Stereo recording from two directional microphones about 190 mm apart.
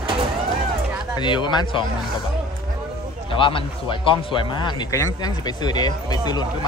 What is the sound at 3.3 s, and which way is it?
Speech, 25° left (ahead or behind).